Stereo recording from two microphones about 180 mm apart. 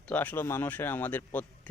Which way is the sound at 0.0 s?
10° left (ahead or behind).